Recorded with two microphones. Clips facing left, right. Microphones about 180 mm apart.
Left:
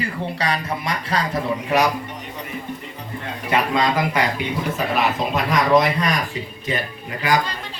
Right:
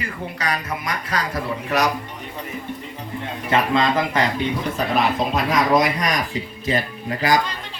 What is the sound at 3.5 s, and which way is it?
A man's voice, 15° left (ahead or behind).